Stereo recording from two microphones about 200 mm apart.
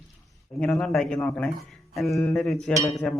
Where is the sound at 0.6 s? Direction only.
5° left (ahead or behind).